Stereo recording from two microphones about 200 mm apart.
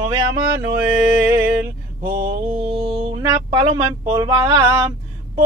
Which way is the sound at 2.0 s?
45° right (ahead or behind).